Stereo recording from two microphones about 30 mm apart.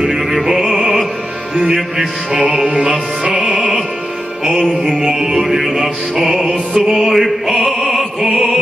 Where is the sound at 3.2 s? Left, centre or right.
Right.